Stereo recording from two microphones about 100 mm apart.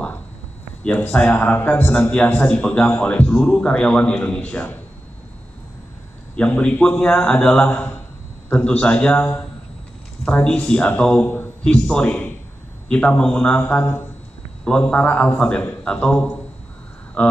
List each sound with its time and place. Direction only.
0.8 s a man's voice: 20° left (ahead or behind)
6.3 s a man's voice: 10° left (ahead or behind)